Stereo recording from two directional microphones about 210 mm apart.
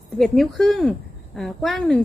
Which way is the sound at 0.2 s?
Centre (ahead or behind).